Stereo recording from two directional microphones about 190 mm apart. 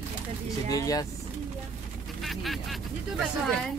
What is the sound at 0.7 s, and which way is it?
Speech, 20° left (ahead or behind).